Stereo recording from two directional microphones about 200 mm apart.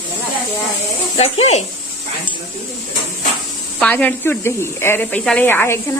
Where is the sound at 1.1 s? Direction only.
35° left (ahead or behind).